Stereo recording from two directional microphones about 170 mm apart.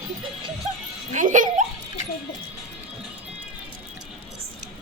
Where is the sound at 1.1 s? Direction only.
50° right (ahead or behind).